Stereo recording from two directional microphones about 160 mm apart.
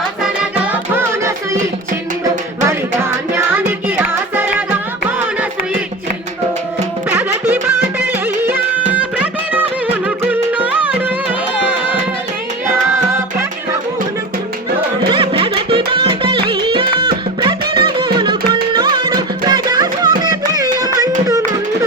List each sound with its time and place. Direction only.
0.6 s music: 10° right (ahead or behind)
2.6 s music: 15° right (ahead or behind)
7.1 s music: 10° right (ahead or behind)
15.1 s music: 35° right (ahead or behind)